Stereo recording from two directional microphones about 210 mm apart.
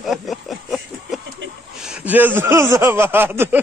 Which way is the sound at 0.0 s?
Centre (ahead or behind).